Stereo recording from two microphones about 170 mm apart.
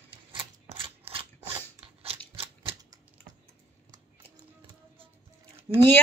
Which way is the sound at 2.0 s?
35° right (ahead or behind).